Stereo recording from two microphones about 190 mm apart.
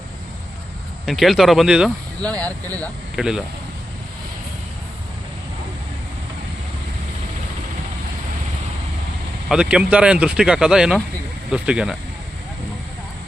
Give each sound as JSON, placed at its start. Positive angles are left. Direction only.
{"t": 1.0, "sound": "speech", "side_deg": 0}
{"t": 2.6, "sound": "speech", "side_deg": -15}
{"t": 3.2, "sound": "speech", "side_deg": -5}
{"t": 9.5, "sound": "speech", "side_deg": -5}